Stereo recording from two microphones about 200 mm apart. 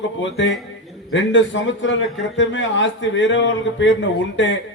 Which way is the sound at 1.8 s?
65° left (ahead or behind).